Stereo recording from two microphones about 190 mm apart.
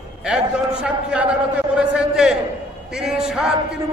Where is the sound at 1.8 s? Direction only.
5° right (ahead or behind).